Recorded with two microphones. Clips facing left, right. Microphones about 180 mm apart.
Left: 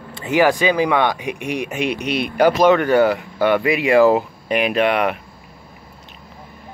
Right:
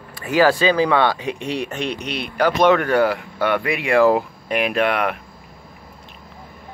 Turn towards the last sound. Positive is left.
turn(degrees=0)  # may be behind; listen again after turning